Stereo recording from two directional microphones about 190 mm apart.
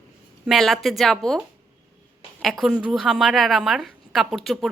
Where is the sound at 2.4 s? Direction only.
Centre (ahead or behind).